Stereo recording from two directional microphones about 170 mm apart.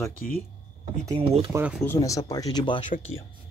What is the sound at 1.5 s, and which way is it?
Speech, 10° right (ahead or behind).